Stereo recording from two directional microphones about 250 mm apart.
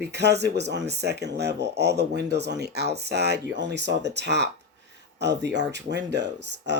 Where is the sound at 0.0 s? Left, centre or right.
Right.